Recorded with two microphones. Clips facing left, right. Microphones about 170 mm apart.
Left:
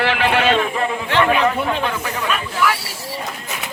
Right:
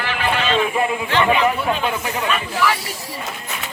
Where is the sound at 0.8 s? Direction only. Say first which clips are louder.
Even; 5° right (ahead or behind).